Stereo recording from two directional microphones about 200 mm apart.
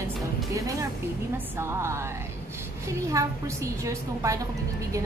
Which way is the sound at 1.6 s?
15° right (ahead or behind).